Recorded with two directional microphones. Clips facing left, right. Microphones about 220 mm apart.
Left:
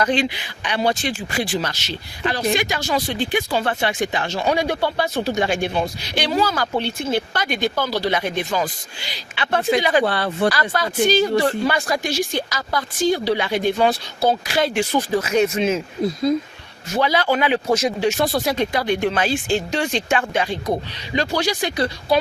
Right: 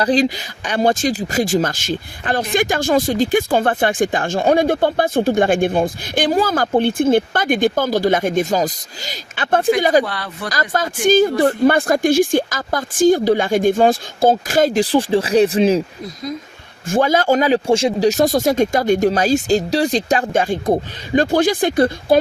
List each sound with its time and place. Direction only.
0.0 s speech: 35° right (ahead or behind)
10.0 s speech: 30° left (ahead or behind)
10.5 s speech: 45° right (ahead or behind)
16.3 s speech: 30° left (ahead or behind)
16.9 s speech: 50° right (ahead or behind)